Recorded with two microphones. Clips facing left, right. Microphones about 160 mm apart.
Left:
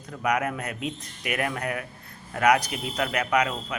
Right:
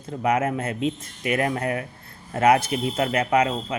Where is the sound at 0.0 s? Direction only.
25° right (ahead or behind).